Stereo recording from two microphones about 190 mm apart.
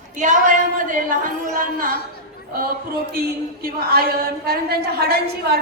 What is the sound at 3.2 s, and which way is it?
Speech, 50° right (ahead or behind).